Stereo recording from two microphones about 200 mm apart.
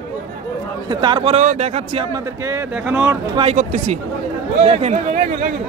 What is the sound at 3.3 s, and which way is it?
A man's voice, 30° right (ahead or behind).